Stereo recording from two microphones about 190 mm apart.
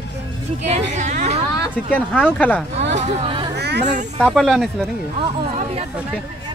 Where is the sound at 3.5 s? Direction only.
60° right (ahead or behind).